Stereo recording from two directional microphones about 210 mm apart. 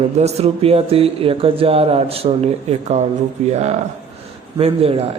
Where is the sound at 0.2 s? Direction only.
30° right (ahead or behind).